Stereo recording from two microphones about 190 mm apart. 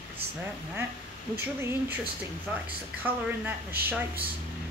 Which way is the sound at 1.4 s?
10° right (ahead or behind).